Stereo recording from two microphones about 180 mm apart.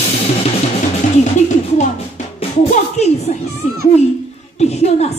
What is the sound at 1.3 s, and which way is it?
Music, 40° left (ahead or behind).